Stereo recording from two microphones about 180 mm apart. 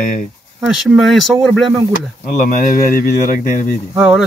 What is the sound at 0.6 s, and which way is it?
Speech, centre (ahead or behind).